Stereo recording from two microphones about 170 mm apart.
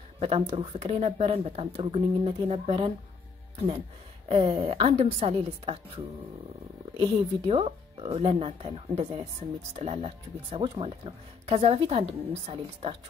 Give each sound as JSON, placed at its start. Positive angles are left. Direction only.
{"t": 0.2, "sound": "speech", "side_deg": -40}
{"t": 4.3, "sound": "speech", "side_deg": -40}
{"t": 7.0, "sound": "speech", "side_deg": -35}